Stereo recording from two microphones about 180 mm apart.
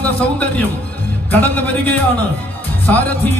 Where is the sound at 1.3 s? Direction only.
10° left (ahead or behind).